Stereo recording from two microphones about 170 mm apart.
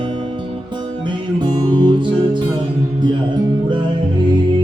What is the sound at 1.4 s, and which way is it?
Music, 25° right (ahead or behind).